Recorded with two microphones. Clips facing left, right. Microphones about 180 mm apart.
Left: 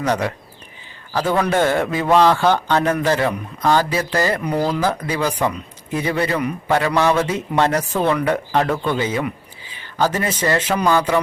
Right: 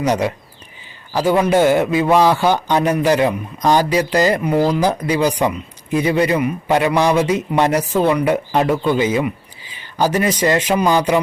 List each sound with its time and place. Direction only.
0.1 s a man's voice: 15° right (ahead or behind)